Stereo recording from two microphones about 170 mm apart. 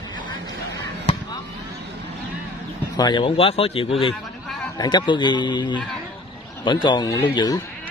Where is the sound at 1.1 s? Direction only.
35° left (ahead or behind).